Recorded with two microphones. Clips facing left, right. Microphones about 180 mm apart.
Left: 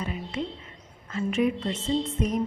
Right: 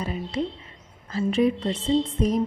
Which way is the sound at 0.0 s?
35° right (ahead or behind).